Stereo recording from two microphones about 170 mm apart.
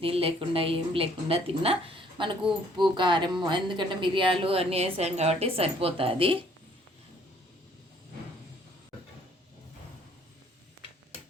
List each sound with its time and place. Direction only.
0.0 s speech: 35° right (ahead or behind)